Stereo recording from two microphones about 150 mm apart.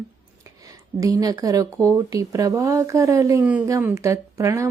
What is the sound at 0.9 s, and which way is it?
Speech, 25° right (ahead or behind).